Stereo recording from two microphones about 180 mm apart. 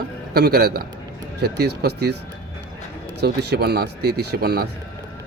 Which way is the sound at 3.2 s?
65° right (ahead or behind).